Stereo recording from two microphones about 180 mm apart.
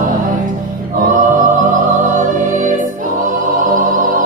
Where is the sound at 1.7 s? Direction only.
45° right (ahead or behind).